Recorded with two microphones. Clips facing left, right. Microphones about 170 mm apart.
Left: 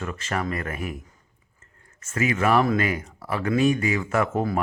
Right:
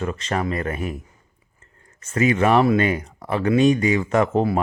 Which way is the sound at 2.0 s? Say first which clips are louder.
Right 5 dB; 30° right (ahead or behind).